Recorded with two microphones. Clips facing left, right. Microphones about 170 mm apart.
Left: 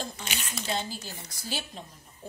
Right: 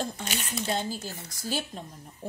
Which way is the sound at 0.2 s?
45° right (ahead or behind).